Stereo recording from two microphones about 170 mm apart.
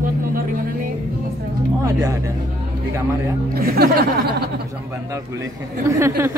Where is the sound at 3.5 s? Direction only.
65° right (ahead or behind).